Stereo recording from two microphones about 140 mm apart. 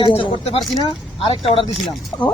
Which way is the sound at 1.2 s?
40° left (ahead or behind).